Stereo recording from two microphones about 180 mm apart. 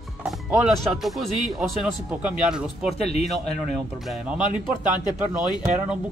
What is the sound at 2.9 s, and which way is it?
Speech, 35° left (ahead or behind).